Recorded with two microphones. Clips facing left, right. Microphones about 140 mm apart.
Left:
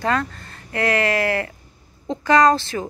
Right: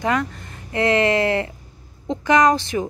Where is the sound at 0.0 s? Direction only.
15° right (ahead or behind).